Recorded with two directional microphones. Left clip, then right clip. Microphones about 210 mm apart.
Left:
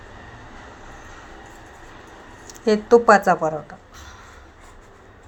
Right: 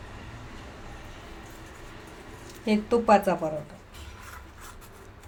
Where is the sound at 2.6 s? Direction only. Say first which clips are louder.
Left 9 dB; 25° left (ahead or behind).